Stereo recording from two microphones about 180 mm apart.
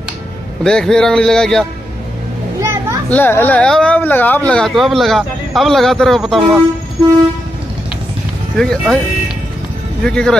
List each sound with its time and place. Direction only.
0.7 s speech: 5° left (ahead or behind)
2.6 s children playing: 15° right (ahead or behind)
3.1 s speech: 10° left (ahead or behind)
8.5 s speech: centre (ahead or behind)
10.0 s speech: 5° left (ahead or behind)